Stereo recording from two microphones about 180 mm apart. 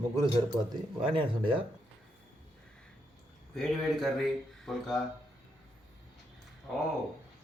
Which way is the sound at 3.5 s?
Centre (ahead or behind).